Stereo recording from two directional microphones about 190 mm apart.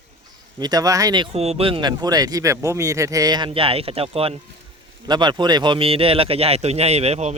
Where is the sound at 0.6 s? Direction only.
20° right (ahead or behind).